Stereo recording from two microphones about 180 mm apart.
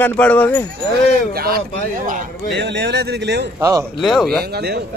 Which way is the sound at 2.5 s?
70° right (ahead or behind).